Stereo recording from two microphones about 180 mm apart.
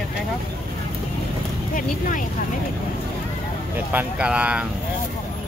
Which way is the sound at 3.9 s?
5° right (ahead or behind).